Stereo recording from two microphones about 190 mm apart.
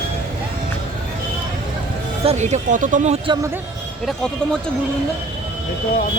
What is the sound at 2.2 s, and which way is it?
Speech, 35° right (ahead or behind).